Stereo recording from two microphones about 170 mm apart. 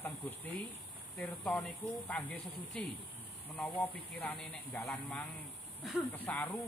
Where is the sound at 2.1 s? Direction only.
5° left (ahead or behind).